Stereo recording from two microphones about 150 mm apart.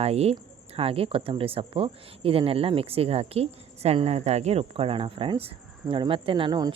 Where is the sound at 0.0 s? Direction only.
45° right (ahead or behind).